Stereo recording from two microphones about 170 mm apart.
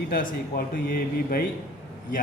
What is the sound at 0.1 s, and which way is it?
Speech, 55° left (ahead or behind).